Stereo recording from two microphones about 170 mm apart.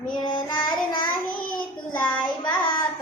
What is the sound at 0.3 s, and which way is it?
Child singing, 25° left (ahead or behind).